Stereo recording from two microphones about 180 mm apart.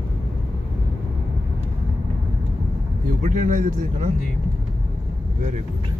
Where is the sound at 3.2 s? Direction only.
45° right (ahead or behind).